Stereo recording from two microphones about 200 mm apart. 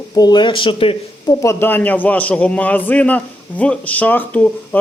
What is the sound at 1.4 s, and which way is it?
Speech, 10° left (ahead or behind).